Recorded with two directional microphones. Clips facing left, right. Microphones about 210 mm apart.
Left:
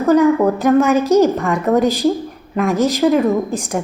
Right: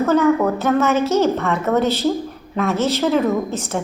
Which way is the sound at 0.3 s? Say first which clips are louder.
Left 5 dB; 15° left (ahead or behind).